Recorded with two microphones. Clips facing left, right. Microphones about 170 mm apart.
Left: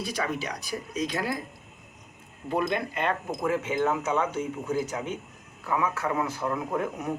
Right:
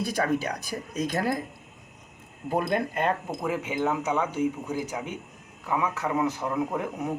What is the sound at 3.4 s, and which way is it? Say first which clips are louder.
Speech: left 2 dB; 15° right (ahead or behind).